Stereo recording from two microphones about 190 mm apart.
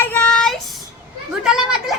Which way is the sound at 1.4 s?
5° right (ahead or behind).